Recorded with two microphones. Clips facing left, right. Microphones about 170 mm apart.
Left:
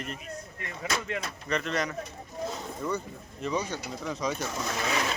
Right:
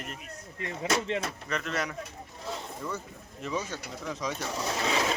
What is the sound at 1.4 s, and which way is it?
Speech, centre (ahead or behind).